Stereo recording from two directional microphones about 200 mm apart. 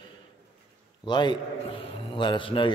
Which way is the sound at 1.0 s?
20° left (ahead or behind).